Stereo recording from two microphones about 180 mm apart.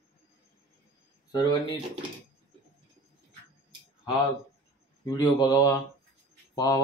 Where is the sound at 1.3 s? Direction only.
25° left (ahead or behind).